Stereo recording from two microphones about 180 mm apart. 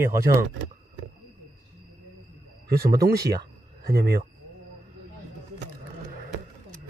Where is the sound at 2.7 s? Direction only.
60° right (ahead or behind).